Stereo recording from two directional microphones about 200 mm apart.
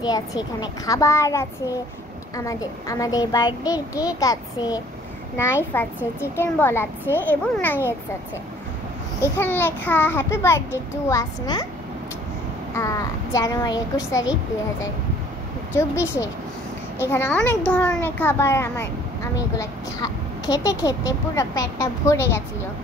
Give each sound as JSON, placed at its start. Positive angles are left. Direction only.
{"t": 0.0, "sound": "a child's voice", "side_deg": 20}
{"t": 9.2, "sound": "speech", "side_deg": 10}
{"t": 12.7, "sound": "speech", "side_deg": 15}
{"t": 15.7, "sound": "speech", "side_deg": 15}